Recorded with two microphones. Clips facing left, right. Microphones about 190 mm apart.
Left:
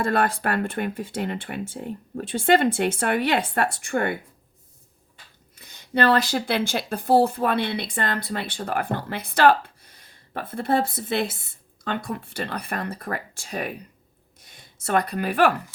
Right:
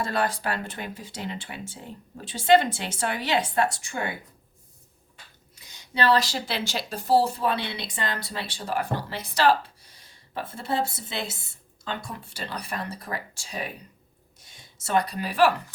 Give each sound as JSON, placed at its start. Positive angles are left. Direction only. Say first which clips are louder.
{"t": 0.0, "sound": "speech", "louder": "left 4 dB", "side_deg": 55}
{"t": 5.5, "sound": "speech", "louder": "left 5 dB", "side_deg": 55}
{"t": 14.3, "sound": "a sound", "louder": "left 2 dB", "side_deg": 55}